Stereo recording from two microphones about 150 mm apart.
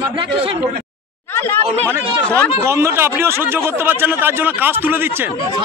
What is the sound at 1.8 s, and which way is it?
Speech, 10° left (ahead or behind).